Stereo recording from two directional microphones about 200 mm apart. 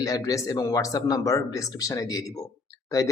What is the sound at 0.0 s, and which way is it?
Speech, 15° left (ahead or behind).